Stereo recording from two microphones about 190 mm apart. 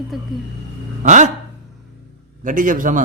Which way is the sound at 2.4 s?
45° right (ahead or behind).